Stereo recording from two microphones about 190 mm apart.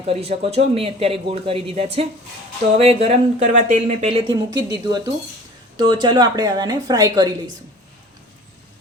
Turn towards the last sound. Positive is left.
turn(degrees=-20)  # may be behind; listen again after turning